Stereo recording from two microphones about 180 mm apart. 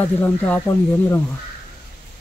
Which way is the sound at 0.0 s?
10° left (ahead or behind).